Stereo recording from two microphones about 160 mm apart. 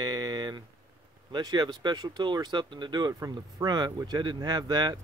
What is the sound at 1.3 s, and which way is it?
Speech, 25° right (ahead or behind).